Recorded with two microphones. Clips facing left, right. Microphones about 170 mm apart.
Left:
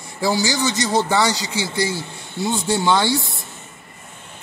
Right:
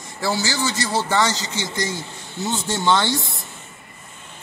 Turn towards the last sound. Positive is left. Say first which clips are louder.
# left 2 dB
turn(degrees=10)  # may be behind; listen again after turning